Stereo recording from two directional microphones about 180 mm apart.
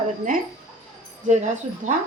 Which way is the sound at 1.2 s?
40° right (ahead or behind).